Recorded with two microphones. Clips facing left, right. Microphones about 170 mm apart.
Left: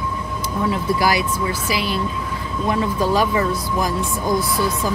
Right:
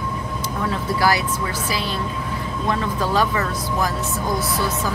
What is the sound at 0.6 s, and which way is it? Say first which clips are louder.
Speech: left 1 dB; 15° left (ahead or behind).